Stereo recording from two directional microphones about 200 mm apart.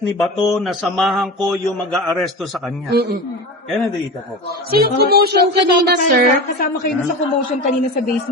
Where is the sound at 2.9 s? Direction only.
50° right (ahead or behind).